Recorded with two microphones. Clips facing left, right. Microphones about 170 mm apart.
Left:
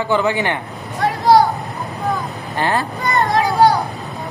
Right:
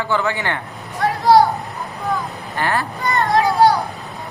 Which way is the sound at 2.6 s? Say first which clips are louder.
Left 2 dB; 20° left (ahead or behind).